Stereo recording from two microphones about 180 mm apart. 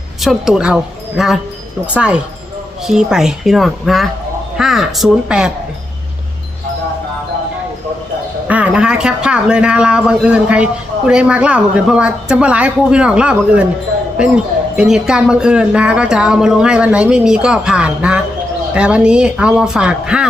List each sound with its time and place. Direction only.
0.2 s speech: centre (ahead or behind)
8.4 s speech: 5° right (ahead or behind)